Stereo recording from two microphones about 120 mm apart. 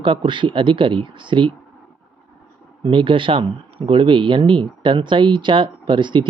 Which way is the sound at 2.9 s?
45° right (ahead or behind).